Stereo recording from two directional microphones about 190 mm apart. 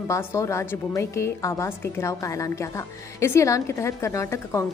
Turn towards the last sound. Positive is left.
turn(degrees=15)  # may be behind; listen again after turning